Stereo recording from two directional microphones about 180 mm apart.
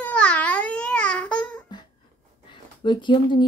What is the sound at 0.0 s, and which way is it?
Babbling, 5° left (ahead or behind).